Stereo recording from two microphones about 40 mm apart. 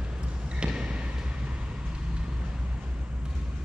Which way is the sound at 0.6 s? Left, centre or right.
Right.